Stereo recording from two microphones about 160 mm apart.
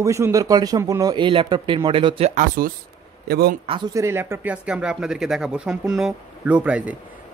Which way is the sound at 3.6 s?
35° right (ahead or behind).